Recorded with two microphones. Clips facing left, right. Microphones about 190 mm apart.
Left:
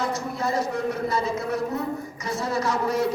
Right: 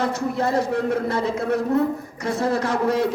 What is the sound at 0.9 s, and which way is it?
Speech, 60° right (ahead or behind).